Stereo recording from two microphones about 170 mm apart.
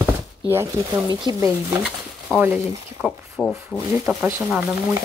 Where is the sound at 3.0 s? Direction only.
Centre (ahead or behind).